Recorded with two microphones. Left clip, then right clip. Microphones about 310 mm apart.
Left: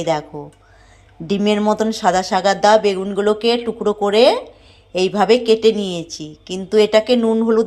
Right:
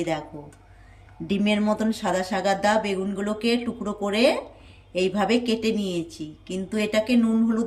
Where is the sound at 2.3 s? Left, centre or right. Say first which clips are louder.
Left 8 dB; left.